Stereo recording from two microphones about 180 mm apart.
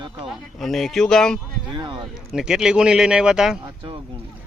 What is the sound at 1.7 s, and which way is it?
Speech, 25° right (ahead or behind).